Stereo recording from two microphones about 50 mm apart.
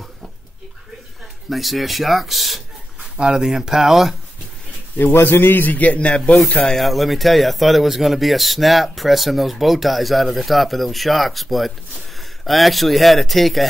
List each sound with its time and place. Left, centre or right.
1.5 s a man's voice: centre
3.0 s speech: centre
4.9 s a man's voice: left
6.8 s a man's voice: centre